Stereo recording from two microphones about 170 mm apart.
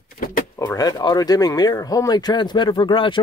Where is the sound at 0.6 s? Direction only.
20° left (ahead or behind).